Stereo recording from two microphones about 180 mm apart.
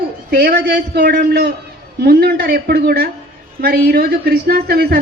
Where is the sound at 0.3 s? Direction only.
55° right (ahead or behind).